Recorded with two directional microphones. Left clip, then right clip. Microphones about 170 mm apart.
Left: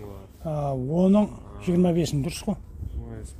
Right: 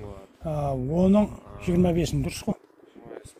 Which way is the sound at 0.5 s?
5° left (ahead or behind).